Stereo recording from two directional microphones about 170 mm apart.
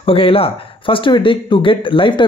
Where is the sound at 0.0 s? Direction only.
35° left (ahead or behind).